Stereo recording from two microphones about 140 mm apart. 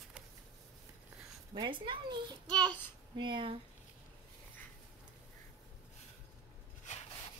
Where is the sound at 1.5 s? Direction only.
35° right (ahead or behind).